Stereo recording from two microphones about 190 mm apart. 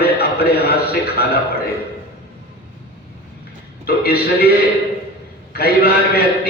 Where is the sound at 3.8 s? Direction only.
55° left (ahead or behind).